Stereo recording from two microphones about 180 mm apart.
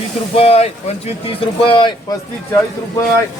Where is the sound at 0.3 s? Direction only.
35° left (ahead or behind).